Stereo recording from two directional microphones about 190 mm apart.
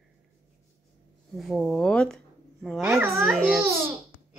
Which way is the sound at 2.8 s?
15° right (ahead or behind).